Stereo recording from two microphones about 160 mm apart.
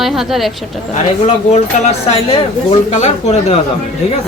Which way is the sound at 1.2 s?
45° left (ahead or behind).